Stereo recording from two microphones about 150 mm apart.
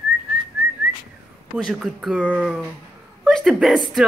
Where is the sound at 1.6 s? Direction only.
Centre (ahead or behind).